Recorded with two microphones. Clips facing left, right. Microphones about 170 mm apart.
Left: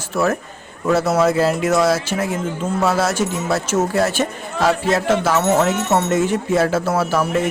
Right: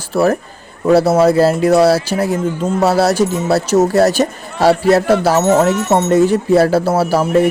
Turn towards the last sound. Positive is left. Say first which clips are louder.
# right 6 dB
turn(degrees=-35)  # may be behind; listen again after turning